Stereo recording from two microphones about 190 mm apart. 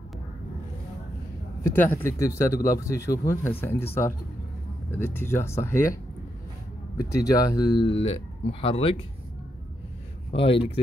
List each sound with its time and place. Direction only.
1.8 s speech: 10° left (ahead or behind)
7.0 s speech: 15° left (ahead or behind)
10.3 s speech: 30° left (ahead or behind)